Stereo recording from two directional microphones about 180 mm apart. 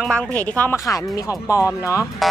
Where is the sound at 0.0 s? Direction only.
5° left (ahead or behind).